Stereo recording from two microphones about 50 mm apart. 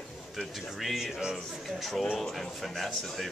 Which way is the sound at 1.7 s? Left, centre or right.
Centre.